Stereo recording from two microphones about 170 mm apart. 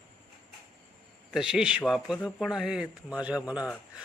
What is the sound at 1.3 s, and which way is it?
A man's voice, 5° right (ahead or behind).